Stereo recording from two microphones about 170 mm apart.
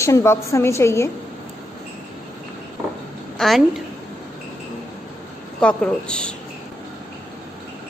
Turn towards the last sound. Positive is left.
turn(degrees=5)  # may be behind; listen again after turning